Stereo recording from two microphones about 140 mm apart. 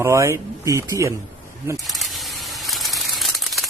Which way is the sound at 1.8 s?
Centre (ahead or behind).